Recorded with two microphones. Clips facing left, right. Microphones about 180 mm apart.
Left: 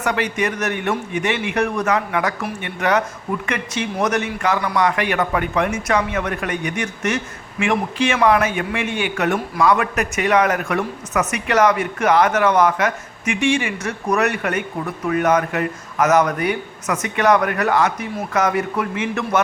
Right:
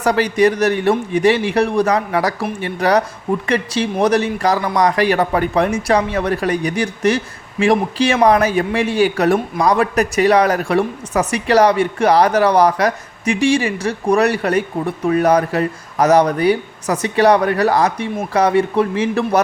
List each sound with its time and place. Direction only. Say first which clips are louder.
0.0 s speech: right 7 dB; 35° right (ahead or behind)